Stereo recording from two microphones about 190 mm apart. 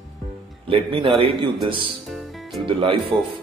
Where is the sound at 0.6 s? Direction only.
30° right (ahead or behind).